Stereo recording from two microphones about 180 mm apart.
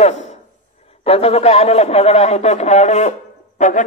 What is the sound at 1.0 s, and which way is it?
A man's voice, 35° left (ahead or behind).